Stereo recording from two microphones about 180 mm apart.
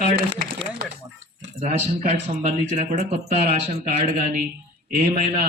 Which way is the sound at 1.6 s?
40° right (ahead or behind).